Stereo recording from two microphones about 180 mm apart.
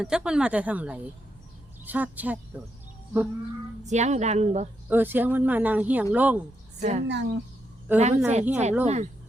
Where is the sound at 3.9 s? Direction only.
40° right (ahead or behind).